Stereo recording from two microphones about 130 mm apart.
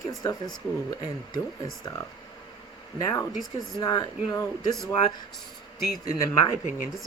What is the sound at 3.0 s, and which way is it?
Speech, 25° left (ahead or behind).